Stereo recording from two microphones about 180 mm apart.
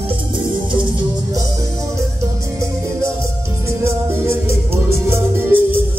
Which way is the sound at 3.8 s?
15° right (ahead or behind).